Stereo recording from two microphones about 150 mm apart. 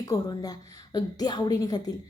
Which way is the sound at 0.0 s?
25° left (ahead or behind).